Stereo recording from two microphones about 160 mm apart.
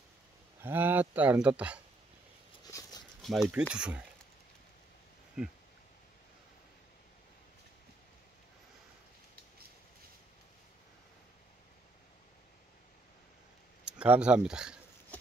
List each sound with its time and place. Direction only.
0.6 s speech: 10° right (ahead or behind)
2.6 s horse: 25° left (ahead or behind)
3.2 s speech: centre (ahead or behind)
5.4 s speech: 5° right (ahead or behind)
13.9 s speech: 10° right (ahead or behind)